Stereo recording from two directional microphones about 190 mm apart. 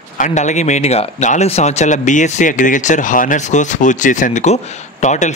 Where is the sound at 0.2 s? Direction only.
40° left (ahead or behind).